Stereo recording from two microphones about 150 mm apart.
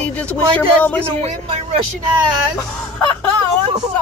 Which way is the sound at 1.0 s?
45° right (ahead or behind).